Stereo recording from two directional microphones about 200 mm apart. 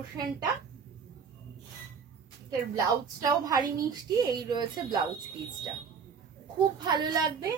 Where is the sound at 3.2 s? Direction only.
20° right (ahead or behind).